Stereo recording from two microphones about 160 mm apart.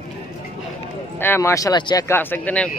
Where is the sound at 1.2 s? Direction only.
15° left (ahead or behind).